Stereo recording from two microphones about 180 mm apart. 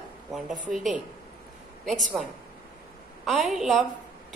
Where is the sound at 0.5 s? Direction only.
45° right (ahead or behind).